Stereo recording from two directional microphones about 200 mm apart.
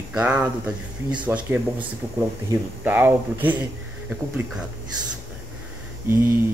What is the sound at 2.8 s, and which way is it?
Speech, 10° right (ahead or behind).